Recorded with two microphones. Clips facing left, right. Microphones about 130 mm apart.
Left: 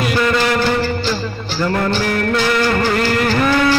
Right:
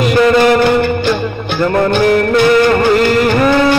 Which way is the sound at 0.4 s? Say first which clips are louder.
Right 7 dB; 60° right (ahead or behind).